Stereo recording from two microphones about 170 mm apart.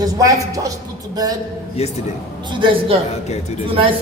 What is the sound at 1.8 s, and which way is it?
Speech, 40° left (ahead or behind).